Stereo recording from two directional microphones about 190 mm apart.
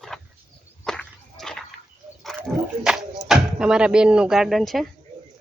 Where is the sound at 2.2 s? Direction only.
Centre (ahead or behind).